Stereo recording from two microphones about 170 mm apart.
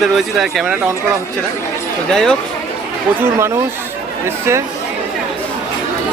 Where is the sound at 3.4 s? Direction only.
15° right (ahead or behind).